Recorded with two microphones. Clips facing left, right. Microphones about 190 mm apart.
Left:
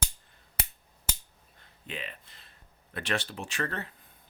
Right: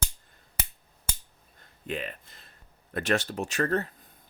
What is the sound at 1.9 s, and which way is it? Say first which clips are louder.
Speech: right 7 dB; 45° right (ahead or behind).